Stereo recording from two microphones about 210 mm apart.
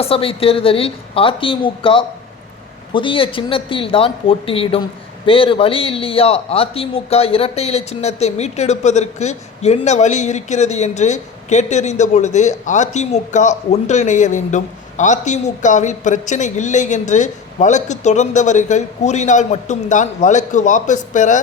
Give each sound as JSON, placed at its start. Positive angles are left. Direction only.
{"t": 0.0, "sound": "a woman's voice", "side_deg": 25}